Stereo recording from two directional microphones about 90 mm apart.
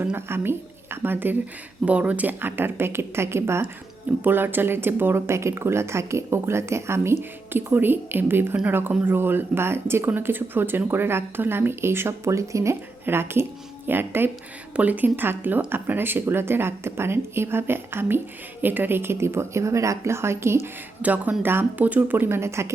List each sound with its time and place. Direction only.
0.0 s a woman's voice: 25° right (ahead or behind)
21.0 s speech: 15° right (ahead or behind)